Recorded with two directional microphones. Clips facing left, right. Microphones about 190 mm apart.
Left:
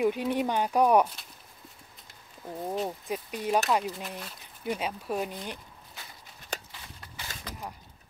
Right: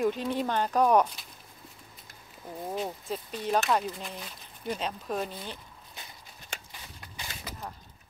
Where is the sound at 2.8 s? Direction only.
15° left (ahead or behind).